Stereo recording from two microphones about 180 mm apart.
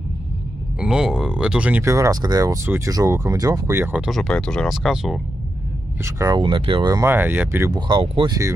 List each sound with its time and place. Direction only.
0.7 s speech: 5° right (ahead or behind)
6.0 s speech: 15° right (ahead or behind)